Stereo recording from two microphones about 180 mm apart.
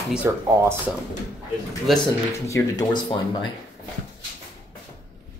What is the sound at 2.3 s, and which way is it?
Speech, 15° left (ahead or behind).